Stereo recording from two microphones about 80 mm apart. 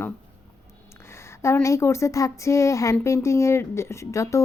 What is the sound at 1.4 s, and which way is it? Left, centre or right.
A woman's voice, left.